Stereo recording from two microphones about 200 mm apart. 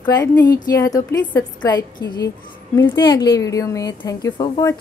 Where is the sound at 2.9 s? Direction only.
20° left (ahead or behind).